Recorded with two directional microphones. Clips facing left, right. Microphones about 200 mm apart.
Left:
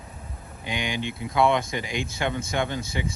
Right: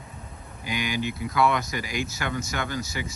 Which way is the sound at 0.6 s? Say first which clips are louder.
Right 1 dB; 25° left (ahead or behind).